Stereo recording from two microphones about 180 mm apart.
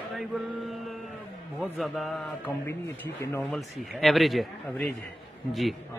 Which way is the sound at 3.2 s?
15° left (ahead or behind).